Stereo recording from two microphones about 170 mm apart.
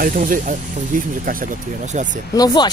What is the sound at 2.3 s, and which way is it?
Speech, 25° left (ahead or behind).